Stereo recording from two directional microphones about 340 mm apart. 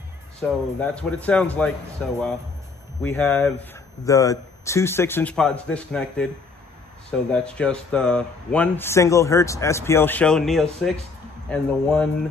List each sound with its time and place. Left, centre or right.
0.4 s speech: centre